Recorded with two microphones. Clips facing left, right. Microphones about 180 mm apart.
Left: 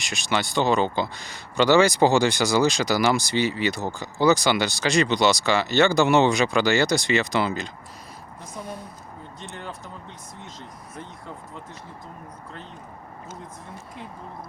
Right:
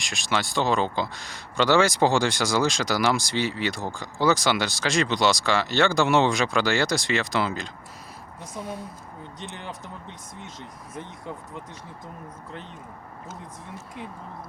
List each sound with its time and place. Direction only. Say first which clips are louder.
0.0 s speech: left 1 dB; centre (ahead or behind)
9.4 s speech: even; 20° right (ahead or behind)